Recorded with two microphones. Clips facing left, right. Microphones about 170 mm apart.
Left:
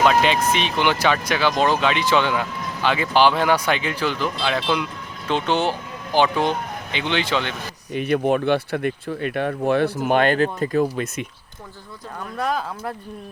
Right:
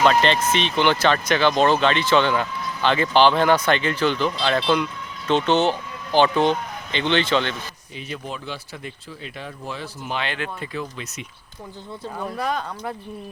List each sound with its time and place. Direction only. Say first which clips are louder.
0.0 s speech: even; 5° left (ahead or behind)
7.9 s speech: left 14 dB; 60° left (ahead or behind)
12.4 s speech: left 3 dB; centre (ahead or behind)